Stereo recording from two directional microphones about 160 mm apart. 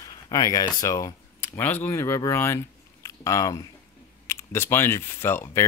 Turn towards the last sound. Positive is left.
turn(degrees=15)  # may be behind; listen again after turning